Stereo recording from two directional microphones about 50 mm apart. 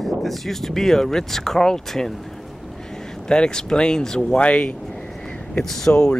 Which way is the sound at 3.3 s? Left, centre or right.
Centre.